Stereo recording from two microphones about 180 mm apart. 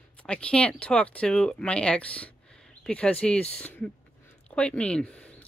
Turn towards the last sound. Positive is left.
turn(degrees=5)  # may be behind; listen again after turning